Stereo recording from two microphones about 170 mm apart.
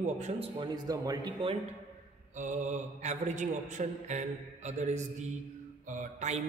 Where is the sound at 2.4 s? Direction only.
45° right (ahead or behind).